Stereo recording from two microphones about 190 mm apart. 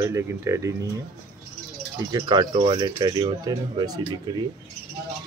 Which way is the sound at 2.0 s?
20° right (ahead or behind).